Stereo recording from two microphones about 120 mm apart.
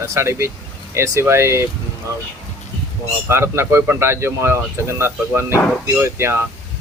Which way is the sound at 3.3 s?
20° right (ahead or behind).